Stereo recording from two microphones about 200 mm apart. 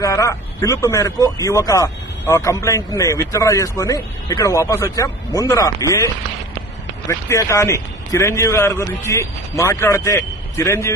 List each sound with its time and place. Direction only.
0.0 s speech: 15° left (ahead or behind)
7.3 s speech: 15° left (ahead or behind)